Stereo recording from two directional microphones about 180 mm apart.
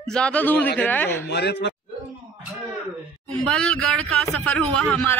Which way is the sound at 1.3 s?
70° left (ahead or behind).